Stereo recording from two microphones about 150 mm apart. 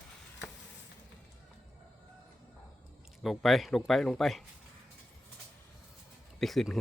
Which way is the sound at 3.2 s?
Centre (ahead or behind).